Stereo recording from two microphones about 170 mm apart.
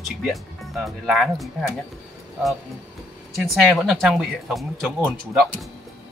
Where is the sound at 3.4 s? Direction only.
Centre (ahead or behind).